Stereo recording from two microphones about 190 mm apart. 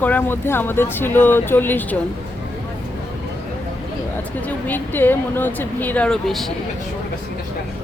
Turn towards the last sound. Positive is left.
turn(degrees=0)  # may be behind; listen again after turning